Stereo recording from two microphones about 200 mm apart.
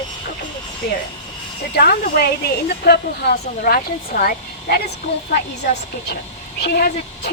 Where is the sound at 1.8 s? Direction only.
50° left (ahead or behind).